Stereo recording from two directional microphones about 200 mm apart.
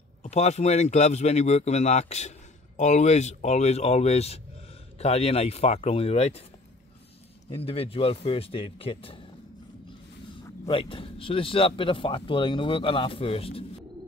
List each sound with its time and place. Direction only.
0.2 s speech: 35° left (ahead or behind)
7.4 s speech: 30° left (ahead or behind)
10.6 s speech: 25° left (ahead or behind)